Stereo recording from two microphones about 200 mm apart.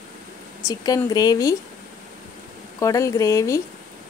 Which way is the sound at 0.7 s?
20° left (ahead or behind).